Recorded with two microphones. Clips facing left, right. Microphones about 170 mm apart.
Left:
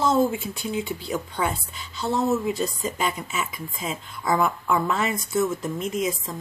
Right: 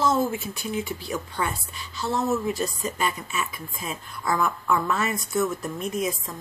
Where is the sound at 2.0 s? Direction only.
30° left (ahead or behind).